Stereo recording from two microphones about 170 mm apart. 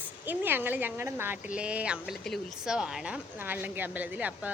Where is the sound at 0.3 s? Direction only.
10° right (ahead or behind).